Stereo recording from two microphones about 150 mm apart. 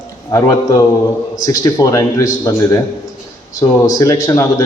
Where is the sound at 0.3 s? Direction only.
20° left (ahead or behind).